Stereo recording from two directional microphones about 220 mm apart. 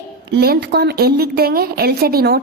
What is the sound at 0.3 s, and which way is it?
A woman's voice, 45° right (ahead or behind).